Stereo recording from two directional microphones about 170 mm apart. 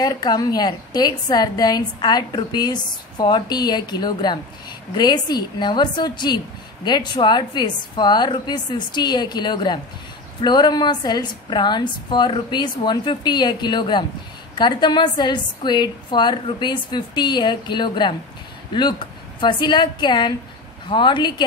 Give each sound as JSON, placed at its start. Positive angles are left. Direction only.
{"t": 0.0, "sound": "a woman's voice", "side_deg": 25}